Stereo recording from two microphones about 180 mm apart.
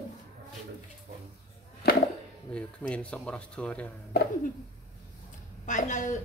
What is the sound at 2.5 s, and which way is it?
Speech, 5° left (ahead or behind).